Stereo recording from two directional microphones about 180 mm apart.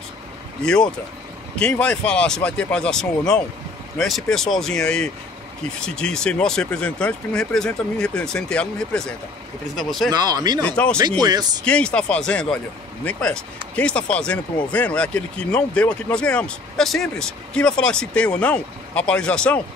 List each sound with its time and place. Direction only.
1.6 s speech: 5° left (ahead or behind)
10.1 s speech: 20° right (ahead or behind)
10.6 s speech: 5° left (ahead or behind)
11.0 s speech: 20° right (ahead or behind)
11.6 s speech: 5° left (ahead or behind)